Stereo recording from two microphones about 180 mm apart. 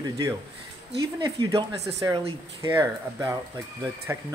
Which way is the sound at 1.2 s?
20° right (ahead or behind).